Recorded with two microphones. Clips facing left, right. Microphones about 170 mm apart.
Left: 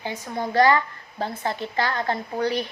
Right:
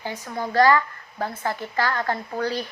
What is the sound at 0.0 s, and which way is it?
Speech, 20° left (ahead or behind).